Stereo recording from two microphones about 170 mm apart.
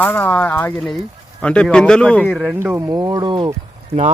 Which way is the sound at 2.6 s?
15° right (ahead or behind).